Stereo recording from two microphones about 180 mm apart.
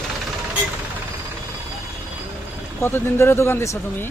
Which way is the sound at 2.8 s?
15° left (ahead or behind).